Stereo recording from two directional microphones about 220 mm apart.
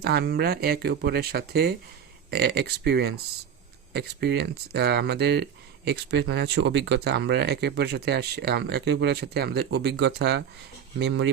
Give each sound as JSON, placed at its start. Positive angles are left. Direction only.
{"t": 0.0, "sound": "speech", "side_deg": -45}